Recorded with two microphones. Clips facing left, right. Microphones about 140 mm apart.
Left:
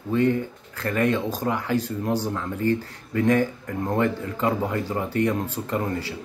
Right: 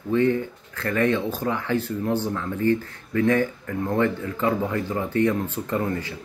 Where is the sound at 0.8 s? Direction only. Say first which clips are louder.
Right 1 dB; 15° left (ahead or behind).